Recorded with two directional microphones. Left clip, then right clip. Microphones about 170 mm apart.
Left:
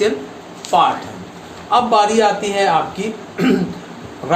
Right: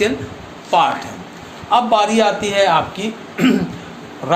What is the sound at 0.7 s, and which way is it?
Speech, 40° right (ahead or behind).